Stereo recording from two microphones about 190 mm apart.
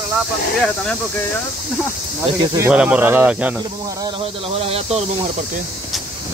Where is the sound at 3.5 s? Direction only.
20° right (ahead or behind).